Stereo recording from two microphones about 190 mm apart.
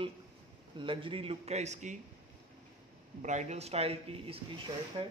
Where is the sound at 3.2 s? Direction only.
40° right (ahead or behind).